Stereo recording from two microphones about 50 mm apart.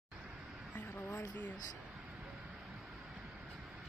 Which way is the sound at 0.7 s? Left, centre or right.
Left.